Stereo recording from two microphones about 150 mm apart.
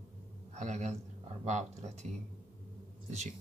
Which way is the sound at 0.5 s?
50° right (ahead or behind).